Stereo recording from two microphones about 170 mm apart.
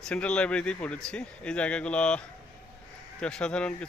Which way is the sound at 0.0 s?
5° left (ahead or behind).